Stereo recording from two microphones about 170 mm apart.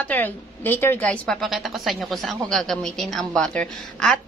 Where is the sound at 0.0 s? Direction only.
10° left (ahead or behind).